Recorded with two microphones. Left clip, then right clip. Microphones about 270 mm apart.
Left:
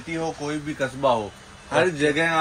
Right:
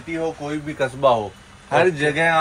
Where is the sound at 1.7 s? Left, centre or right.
Right.